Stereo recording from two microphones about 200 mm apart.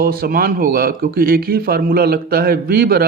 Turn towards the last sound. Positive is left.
turn(degrees=-50)  # may be behind; listen again after turning